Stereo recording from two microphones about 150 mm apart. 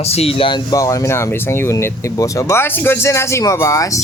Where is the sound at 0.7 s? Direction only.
20° left (ahead or behind).